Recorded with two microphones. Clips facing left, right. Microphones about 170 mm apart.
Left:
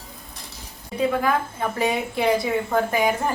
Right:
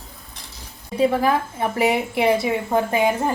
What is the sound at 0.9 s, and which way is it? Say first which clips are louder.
A woman's voice: right 3 dB; 25° right (ahead or behind).